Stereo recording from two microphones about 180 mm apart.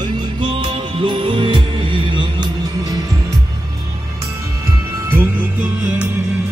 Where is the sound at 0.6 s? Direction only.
30° right (ahead or behind).